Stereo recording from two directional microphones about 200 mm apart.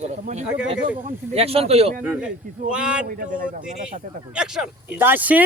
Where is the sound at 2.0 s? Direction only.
10° right (ahead or behind).